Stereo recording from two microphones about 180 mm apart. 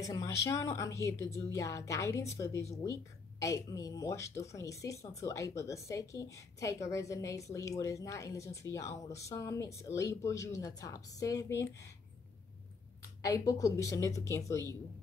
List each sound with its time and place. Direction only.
0.0 s speech: 20° left (ahead or behind)
13.3 s speech: 20° left (ahead or behind)